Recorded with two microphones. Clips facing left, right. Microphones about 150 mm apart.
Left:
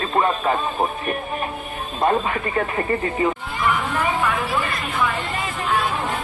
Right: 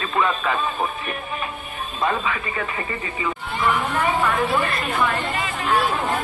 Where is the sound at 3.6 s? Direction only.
5° right (ahead or behind).